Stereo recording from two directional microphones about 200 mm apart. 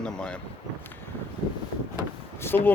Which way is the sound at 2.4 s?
10° left (ahead or behind).